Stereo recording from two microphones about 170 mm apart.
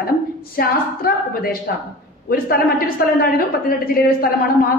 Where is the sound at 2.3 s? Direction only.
60° left (ahead or behind).